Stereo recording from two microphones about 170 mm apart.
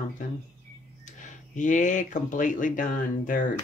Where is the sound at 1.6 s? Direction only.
45° left (ahead or behind).